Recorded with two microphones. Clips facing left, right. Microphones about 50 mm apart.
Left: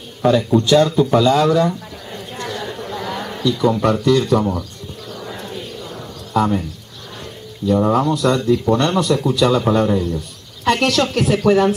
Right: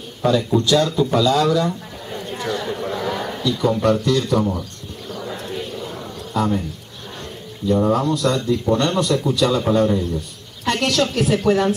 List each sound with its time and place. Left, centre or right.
0.2 s speech: centre
2.1 s a sound: centre
6.3 s speech: centre
7.7 s a woman's voice: centre